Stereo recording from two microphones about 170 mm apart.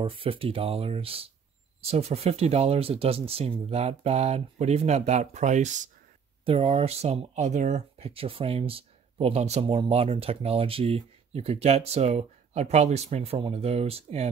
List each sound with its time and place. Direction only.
0.0 s speech: 30° right (ahead or behind)
6.4 s speech: 35° right (ahead or behind)